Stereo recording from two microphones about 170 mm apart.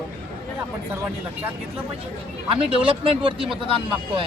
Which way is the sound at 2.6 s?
35° right (ahead or behind).